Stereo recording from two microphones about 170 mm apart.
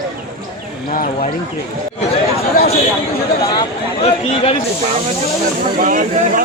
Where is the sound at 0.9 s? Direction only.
45° left (ahead or behind).